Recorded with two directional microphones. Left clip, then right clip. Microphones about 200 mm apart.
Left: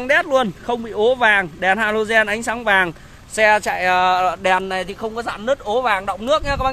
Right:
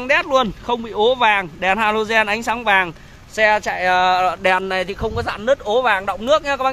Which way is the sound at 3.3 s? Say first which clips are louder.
Left 1 dB; 25° left (ahead or behind).